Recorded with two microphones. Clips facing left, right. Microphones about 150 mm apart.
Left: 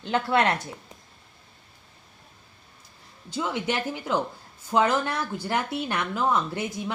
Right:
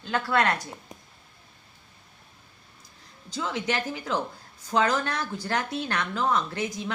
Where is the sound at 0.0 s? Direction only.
20° left (ahead or behind).